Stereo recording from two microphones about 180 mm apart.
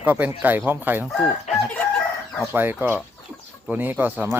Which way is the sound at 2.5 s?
10° right (ahead or behind).